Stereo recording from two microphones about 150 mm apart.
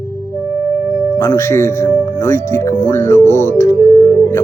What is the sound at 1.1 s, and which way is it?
Speech, 20° left (ahead or behind).